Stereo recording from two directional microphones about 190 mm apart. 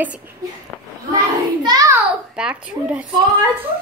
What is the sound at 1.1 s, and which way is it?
Child singing, 20° right (ahead or behind).